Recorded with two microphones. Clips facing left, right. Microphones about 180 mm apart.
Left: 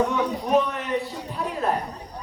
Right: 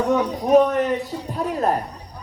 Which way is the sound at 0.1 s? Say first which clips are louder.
Right 6 dB; 45° right (ahead or behind).